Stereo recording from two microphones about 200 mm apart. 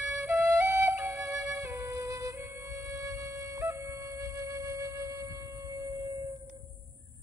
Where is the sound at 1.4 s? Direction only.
15° right (ahead or behind).